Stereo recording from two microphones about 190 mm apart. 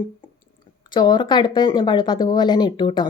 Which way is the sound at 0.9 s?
25° left (ahead or behind).